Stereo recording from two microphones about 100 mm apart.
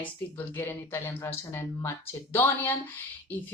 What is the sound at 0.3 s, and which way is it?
Speech, 20° left (ahead or behind).